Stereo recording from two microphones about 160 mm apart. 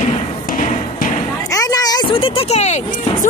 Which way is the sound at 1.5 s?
20° left (ahead or behind).